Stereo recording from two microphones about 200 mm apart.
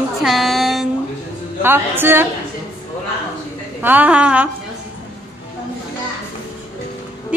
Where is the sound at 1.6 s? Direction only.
10° right (ahead or behind).